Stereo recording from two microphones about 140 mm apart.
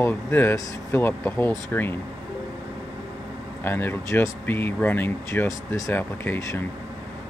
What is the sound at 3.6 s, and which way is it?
Speech, 15° left (ahead or behind).